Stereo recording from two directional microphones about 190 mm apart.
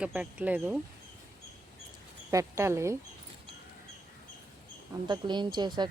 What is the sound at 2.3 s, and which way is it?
Speech, 15° right (ahead or behind).